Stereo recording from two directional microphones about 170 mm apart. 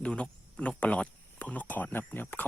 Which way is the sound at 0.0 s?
5° left (ahead or behind).